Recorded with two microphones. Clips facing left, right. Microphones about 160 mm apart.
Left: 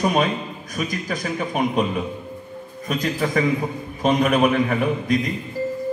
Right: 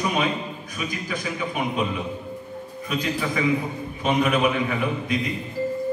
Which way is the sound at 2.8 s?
45° left (ahead or behind).